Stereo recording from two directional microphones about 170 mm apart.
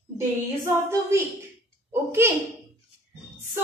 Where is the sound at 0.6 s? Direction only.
15° right (ahead or behind).